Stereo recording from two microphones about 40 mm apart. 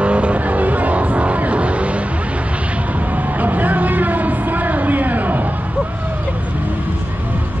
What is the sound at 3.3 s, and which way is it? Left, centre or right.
Vehicle, right.